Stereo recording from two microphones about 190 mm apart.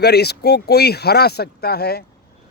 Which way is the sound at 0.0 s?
60° left (ahead or behind).